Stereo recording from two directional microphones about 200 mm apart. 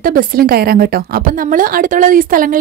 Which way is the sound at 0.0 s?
45° right (ahead or behind).